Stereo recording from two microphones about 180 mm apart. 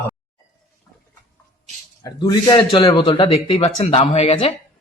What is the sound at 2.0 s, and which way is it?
A man's voice, 20° left (ahead or behind).